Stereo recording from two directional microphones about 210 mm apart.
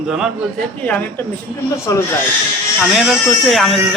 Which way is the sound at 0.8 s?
5° left (ahead or behind).